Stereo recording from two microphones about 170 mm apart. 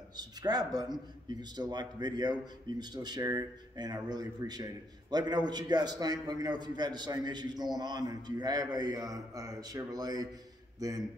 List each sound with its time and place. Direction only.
0.2 s speech: 25° right (ahead or behind)